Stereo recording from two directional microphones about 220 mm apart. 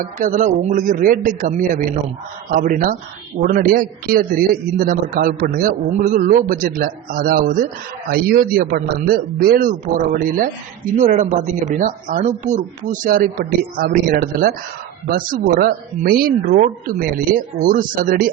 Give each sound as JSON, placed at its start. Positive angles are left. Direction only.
{"t": 0.0, "sound": "a man's voice", "side_deg": -35}